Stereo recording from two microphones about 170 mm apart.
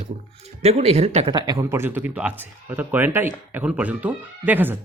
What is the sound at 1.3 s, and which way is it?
Speech, 20° right (ahead or behind).